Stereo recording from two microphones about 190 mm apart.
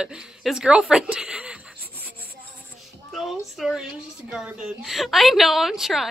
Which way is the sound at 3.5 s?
Centre (ahead or behind).